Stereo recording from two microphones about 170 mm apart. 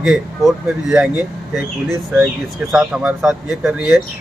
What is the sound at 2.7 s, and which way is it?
Speech, 5° right (ahead or behind).